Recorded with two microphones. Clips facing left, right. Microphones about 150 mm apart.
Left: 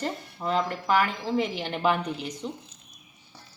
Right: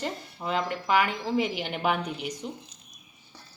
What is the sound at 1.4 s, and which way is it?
Speech, 30° left (ahead or behind).